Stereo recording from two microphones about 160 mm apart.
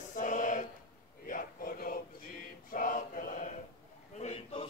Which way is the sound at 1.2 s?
60° left (ahead or behind).